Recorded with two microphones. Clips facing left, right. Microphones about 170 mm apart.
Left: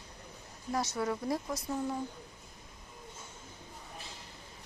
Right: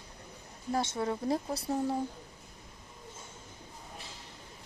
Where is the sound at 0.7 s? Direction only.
25° right (ahead or behind).